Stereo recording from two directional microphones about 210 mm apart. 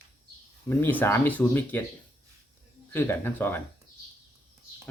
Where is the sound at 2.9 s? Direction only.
10° left (ahead or behind).